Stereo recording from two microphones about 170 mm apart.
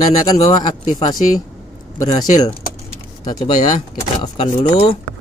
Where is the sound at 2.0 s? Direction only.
25° left (ahead or behind).